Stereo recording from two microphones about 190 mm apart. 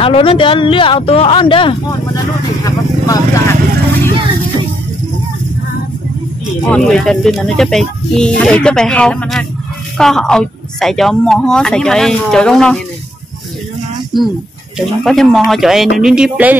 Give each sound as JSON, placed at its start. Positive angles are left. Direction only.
{"t": 0.0, "sound": "speech", "side_deg": 30}
{"t": 6.7, "sound": "speech", "side_deg": 0}
{"t": 14.1, "sound": "speech", "side_deg": 0}